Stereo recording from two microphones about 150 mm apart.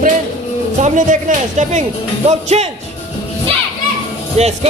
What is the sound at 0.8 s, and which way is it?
Speech, 60° right (ahead or behind).